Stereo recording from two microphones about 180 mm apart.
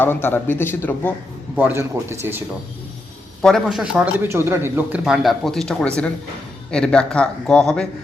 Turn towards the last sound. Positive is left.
turn(degrees=5)  # may be behind; listen again after turning